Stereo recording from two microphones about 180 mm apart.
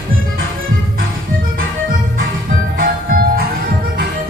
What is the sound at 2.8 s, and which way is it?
Music, 55° right (ahead or behind).